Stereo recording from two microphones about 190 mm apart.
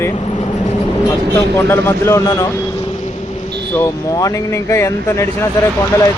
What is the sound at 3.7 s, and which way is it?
Speech, 15° left (ahead or behind).